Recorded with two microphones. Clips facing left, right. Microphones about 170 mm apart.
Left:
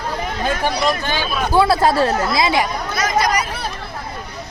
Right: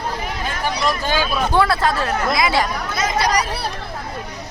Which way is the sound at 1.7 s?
35° left (ahead or behind).